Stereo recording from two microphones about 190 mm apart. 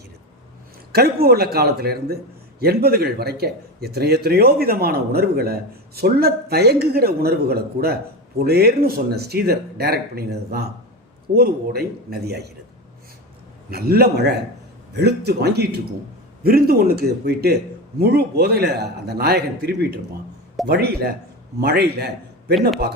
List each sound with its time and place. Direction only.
0.9 s a man's voice: 55° right (ahead or behind)
13.7 s a man's voice: 55° right (ahead or behind)